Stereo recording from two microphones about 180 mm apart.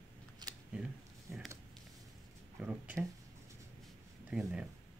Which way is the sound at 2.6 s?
5° right (ahead or behind).